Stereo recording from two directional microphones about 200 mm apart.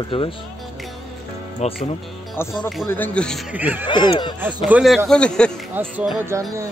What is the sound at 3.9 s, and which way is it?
Speech, 20° left (ahead or behind).